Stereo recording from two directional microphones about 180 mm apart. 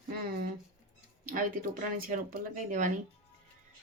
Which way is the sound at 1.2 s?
50° right (ahead or behind).